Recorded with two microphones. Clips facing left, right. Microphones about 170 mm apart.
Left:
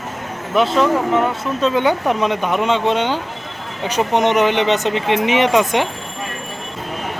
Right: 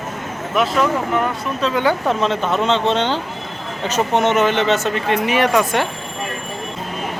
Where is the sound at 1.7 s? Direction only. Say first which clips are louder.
Right 1 dB; 15° left (ahead or behind).